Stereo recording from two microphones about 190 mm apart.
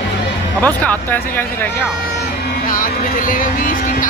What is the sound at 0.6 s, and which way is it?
Speech, 10° left (ahead or behind).